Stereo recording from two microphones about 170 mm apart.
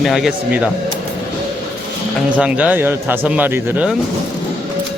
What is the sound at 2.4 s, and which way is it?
Speech, 5° right (ahead or behind).